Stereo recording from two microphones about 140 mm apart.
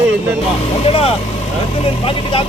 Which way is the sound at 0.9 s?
45° left (ahead or behind).